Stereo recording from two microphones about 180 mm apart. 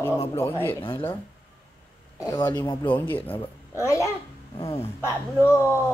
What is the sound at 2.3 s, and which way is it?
Speech, 25° left (ahead or behind).